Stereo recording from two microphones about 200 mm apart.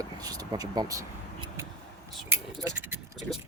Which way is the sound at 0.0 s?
20° right (ahead or behind).